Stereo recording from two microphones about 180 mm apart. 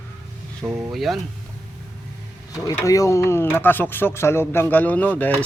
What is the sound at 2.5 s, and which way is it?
Speech, 20° left (ahead or behind).